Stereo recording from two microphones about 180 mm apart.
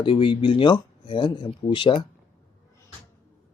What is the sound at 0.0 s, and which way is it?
Speech, 25° left (ahead or behind).